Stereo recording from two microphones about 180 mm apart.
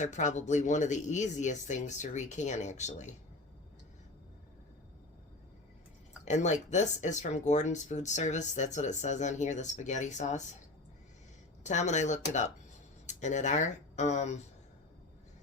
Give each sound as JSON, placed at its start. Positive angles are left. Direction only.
{"t": 0.0, "sound": "speech", "side_deg": 40}
{"t": 6.2, "sound": "speech", "side_deg": 40}
{"t": 11.6, "sound": "speech", "side_deg": 40}